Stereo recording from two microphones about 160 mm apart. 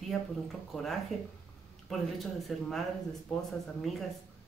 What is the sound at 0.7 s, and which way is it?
Speech, centre (ahead or behind).